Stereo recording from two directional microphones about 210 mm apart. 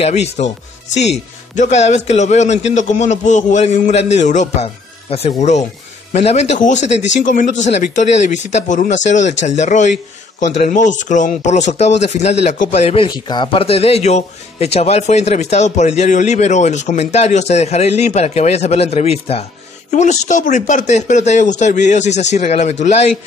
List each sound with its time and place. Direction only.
0.0 s a man's voice: 30° left (ahead or behind)